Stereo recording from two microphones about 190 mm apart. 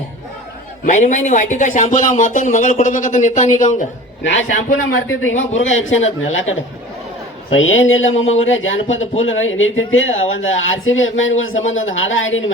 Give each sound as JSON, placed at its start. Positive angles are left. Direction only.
{"t": 0.9, "sound": "speech", "side_deg": 40}
{"t": 4.2, "sound": "a man's voice", "side_deg": 80}